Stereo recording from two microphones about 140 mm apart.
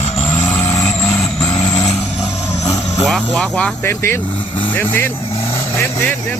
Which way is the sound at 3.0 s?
Centre (ahead or behind).